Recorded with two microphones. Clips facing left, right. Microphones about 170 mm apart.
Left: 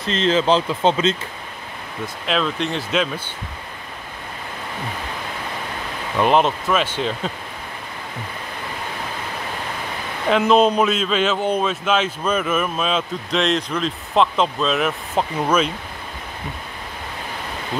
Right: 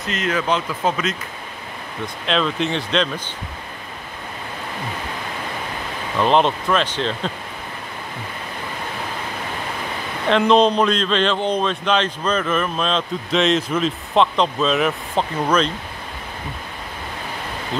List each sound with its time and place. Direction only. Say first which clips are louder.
0.0 s speech: left 4 dB; 30° left (ahead or behind)
2.2 s a man's voice: right 1 dB; 5° left (ahead or behind)
6.1 s speech: even; 10° left (ahead or behind)
10.2 s a man's voice: even; 5° left (ahead or behind)